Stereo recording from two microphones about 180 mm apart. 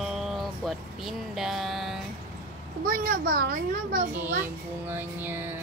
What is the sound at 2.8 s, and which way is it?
Speech, 55° right (ahead or behind).